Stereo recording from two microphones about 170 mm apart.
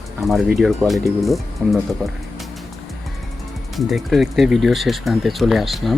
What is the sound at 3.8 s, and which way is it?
Speech, centre (ahead or behind).